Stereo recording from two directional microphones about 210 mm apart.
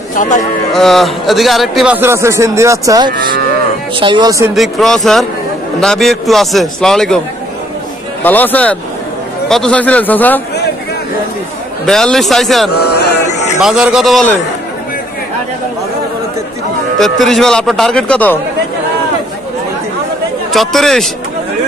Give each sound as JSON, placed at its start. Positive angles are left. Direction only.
{"t": 0.1, "sound": "speech", "side_deg": 35}
{"t": 0.7, "sound": "a man's voice", "side_deg": 0}
{"t": 4.6, "sound": "a man's voice", "side_deg": 0}
{"t": 8.2, "sound": "a man's voice", "side_deg": 10}
{"t": 11.8, "sound": "a man's voice", "side_deg": 0}
{"t": 17.0, "sound": "a man's voice", "side_deg": 0}
{"t": 20.5, "sound": "a man's voice", "side_deg": 0}